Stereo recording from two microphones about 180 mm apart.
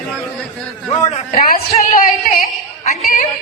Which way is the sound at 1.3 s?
50° left (ahead or behind).